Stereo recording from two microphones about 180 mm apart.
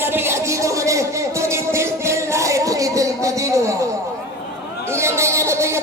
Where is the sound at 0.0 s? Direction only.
15° right (ahead or behind).